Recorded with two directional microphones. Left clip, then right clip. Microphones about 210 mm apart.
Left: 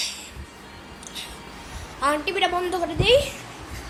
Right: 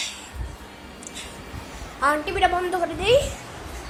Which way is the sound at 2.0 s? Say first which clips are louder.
Right 2 dB; 10° left (ahead or behind).